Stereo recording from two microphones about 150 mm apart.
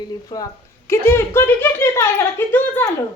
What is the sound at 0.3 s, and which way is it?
Speech, 30° left (ahead or behind).